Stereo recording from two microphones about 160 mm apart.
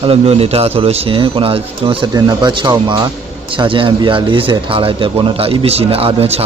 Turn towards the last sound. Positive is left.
turn(degrees=-40)  # may be behind; listen again after turning